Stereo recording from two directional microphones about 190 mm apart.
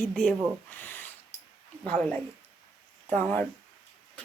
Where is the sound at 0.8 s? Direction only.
10° left (ahead or behind).